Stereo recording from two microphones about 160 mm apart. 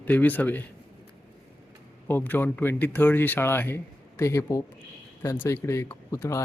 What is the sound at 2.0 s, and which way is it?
Speech, 10° left (ahead or behind).